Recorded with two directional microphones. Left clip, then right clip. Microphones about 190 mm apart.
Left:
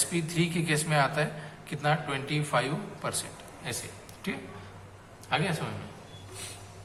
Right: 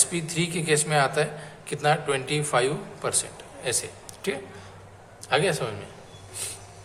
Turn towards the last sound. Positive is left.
turn(degrees=-45)  # may be behind; listen again after turning